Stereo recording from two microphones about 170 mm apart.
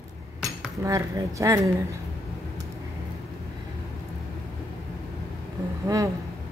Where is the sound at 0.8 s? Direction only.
15° right (ahead or behind).